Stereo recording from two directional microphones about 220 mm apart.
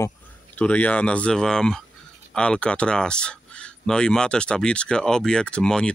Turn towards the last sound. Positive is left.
turn(degrees=5)  # may be behind; listen again after turning